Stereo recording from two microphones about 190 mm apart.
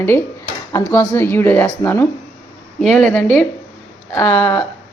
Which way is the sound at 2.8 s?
Centre (ahead or behind).